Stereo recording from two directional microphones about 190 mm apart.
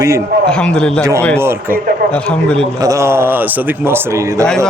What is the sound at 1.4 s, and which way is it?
Speech, 10° right (ahead or behind).